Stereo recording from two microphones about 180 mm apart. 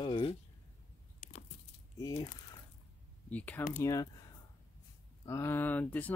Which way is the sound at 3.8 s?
20° left (ahead or behind).